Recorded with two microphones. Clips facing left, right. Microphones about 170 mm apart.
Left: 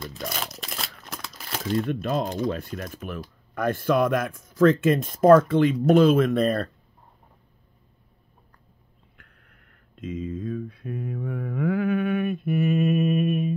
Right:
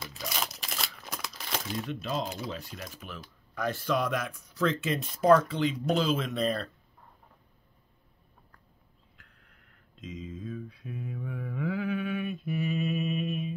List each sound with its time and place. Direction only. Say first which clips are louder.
0.4 s crumpling: left 2 dB; centre (ahead or behind)
1.9 s speech: left 7 dB; 55° left (ahead or behind)
9.1 s a sound: left 4 dB; 55° left (ahead or behind)